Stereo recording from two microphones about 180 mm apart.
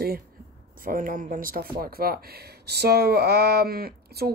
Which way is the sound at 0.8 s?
50° right (ahead or behind).